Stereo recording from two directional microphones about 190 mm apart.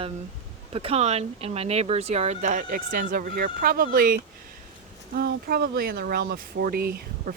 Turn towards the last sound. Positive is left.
turn(degrees=-55)  # may be behind; listen again after turning